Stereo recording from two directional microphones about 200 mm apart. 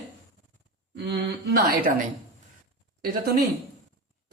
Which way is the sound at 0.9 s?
50° right (ahead or behind).